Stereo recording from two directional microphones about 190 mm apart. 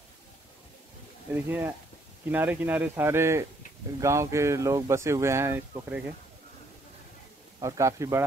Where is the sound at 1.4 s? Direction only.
10° right (ahead or behind).